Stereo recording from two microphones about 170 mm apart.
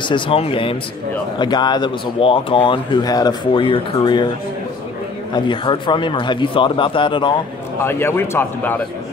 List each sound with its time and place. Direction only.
0.1 s a man's voice: 30° left (ahead or behind)
5.3 s speech: 30° left (ahead or behind)
7.8 s a man's voice: 15° left (ahead or behind)